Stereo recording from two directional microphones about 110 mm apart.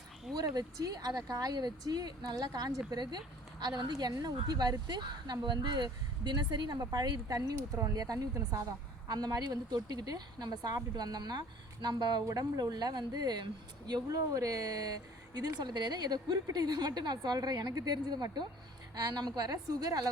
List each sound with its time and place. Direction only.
0.3 s a woman's voice: 35° right (ahead or behind)